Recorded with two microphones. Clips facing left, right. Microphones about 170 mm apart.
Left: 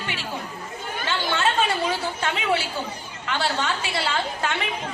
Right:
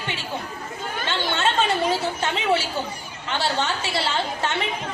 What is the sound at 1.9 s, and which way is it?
A woman's voice, 25° right (ahead or behind).